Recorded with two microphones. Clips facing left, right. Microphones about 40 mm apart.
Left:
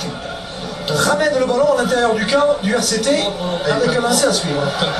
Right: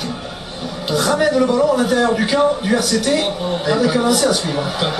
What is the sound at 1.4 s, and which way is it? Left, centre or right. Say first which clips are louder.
A man's voice: even; centre.